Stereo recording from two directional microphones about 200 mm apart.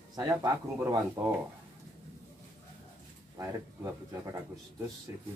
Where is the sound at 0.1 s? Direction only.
20° right (ahead or behind).